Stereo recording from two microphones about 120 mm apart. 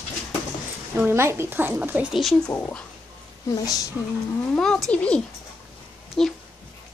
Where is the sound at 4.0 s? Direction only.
5° left (ahead or behind).